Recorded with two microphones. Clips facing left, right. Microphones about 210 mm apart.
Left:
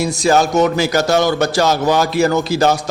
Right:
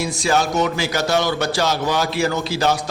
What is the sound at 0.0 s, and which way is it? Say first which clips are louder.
A man's voice: left 5 dB; 40° left (ahead or behind).